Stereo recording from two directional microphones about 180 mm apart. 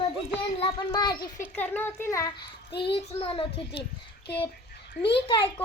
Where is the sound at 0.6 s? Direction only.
20° left (ahead or behind).